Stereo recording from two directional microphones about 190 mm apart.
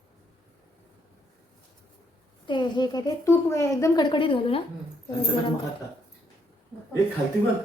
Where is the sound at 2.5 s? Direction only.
25° left (ahead or behind).